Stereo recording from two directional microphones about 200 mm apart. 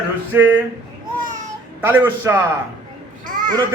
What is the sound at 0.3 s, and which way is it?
Speech, 10° right (ahead or behind).